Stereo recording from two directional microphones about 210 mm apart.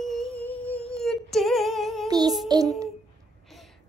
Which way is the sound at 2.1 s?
20° right (ahead or behind).